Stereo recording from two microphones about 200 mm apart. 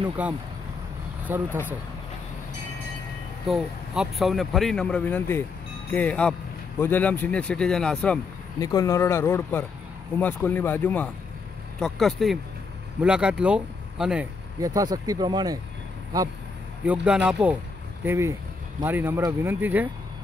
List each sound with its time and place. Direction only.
0.2 s speech: 5° right (ahead or behind)
3.4 s speech: centre (ahead or behind)
8.5 s speech: 15° left (ahead or behind); by 14.2 s 5° right (ahead or behind)
14.6 s speech: 15° right (ahead or behind)
16.8 s speech: 5° right (ahead or behind)